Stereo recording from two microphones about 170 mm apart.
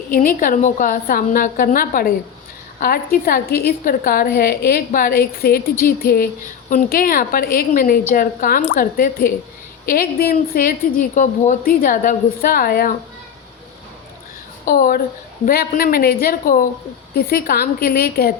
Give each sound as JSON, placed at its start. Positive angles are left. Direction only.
{"t": 0.1, "sound": "a woman's voice", "side_deg": 55}
{"t": 14.6, "sound": "a woman's voice", "side_deg": 55}